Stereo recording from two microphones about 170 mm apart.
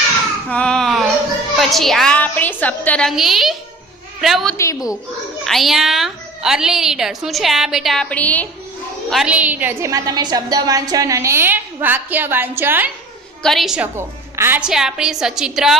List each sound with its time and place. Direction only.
0.5 s babbling: 5° left (ahead or behind)
1.5 s a woman's voice: centre (ahead or behind)
4.5 s a woman's voice: 20° left (ahead or behind)
5.5 s a woman's voice: centre (ahead or behind)
9.0 s a woman's voice: 5° right (ahead or behind)
13.4 s a woman's voice: centre (ahead or behind)
13.9 s a woman's voice: 15° right (ahead or behind)